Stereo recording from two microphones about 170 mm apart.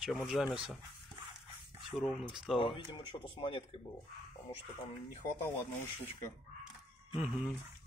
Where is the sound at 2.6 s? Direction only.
30° left (ahead or behind).